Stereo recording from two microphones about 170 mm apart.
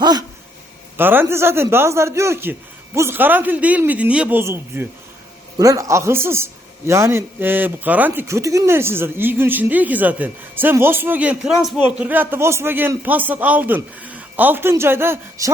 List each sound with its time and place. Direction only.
0.0 s dog: 25° right (ahead or behind)
0.9 s a man's voice: 10° right (ahead or behind)